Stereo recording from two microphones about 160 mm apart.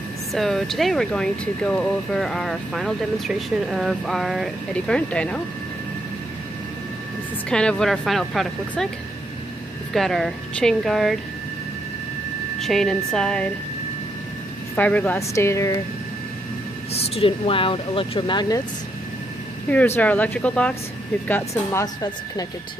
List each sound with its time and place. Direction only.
0.3 s speech: centre (ahead or behind)
7.4 s speech: 5° left (ahead or behind)
9.9 s speech: centre (ahead or behind)
12.5 s speech: centre (ahead or behind)
14.8 s a woman's voice: 10° left (ahead or behind)
16.9 s speech: 40° left (ahead or behind)
19.7 s a woman's voice: 10° left (ahead or behind)
21.8 s speech: 25° left (ahead or behind)